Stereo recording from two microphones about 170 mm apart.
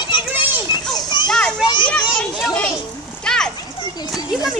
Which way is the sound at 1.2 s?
5° left (ahead or behind).